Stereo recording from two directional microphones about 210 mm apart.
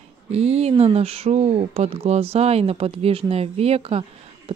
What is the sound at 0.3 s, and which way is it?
Speech, 30° right (ahead or behind).